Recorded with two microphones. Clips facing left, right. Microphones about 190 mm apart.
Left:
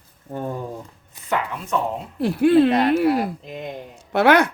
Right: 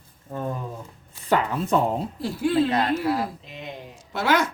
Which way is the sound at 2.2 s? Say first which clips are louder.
Left 8 dB; 65° left (ahead or behind).